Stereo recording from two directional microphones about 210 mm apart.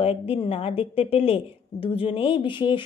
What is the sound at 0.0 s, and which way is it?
Speech, 25° left (ahead or behind).